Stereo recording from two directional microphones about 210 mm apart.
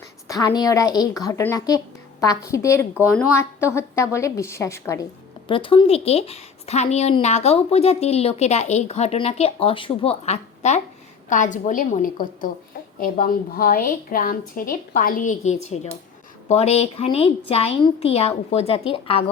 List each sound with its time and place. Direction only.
0.3 s a woman's voice: 20° left (ahead or behind)